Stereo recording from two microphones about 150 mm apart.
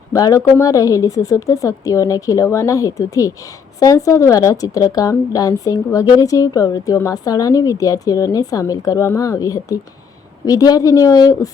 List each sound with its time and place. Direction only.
0.1 s a woman's voice: 20° left (ahead or behind)